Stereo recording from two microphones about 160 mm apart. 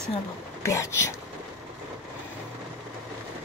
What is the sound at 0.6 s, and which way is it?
Speech, 20° left (ahead or behind).